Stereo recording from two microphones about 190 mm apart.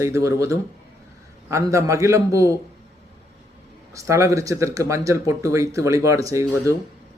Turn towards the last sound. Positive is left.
turn(degrees=-15)  # may be behind; listen again after turning